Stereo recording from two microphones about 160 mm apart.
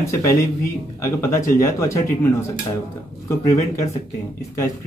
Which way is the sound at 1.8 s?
20° left (ahead or behind).